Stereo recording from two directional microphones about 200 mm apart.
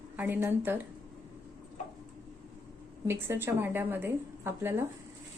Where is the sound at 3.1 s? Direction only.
10° right (ahead or behind).